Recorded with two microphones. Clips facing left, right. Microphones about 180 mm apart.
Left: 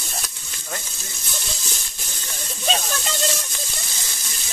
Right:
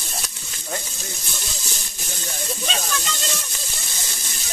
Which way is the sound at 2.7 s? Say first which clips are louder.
Left 7 dB; 40° left (ahead or behind).